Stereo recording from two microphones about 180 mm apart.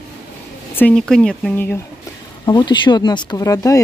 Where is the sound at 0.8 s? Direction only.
5° left (ahead or behind).